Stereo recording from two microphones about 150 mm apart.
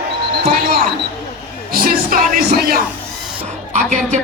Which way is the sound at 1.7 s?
80° right.